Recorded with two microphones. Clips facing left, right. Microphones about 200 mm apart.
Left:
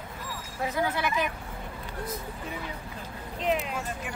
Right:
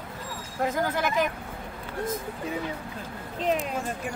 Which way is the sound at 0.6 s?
45° right (ahead or behind).